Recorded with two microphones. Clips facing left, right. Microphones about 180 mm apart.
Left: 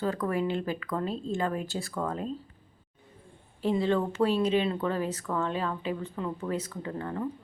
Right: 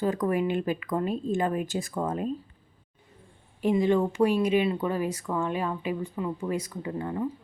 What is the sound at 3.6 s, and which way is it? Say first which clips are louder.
Speech: right 3 dB; 15° right (ahead or behind).